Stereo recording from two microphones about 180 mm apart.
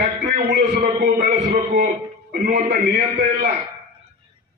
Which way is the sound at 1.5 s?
40° right (ahead or behind).